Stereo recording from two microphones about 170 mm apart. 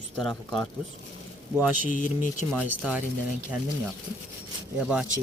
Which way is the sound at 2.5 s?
5° right (ahead or behind).